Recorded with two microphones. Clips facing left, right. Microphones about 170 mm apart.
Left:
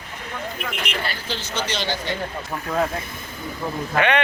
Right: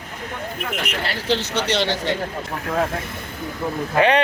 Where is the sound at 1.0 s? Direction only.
75° right (ahead or behind).